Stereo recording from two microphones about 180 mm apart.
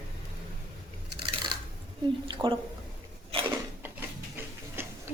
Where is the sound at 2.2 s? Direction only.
30° right (ahead or behind).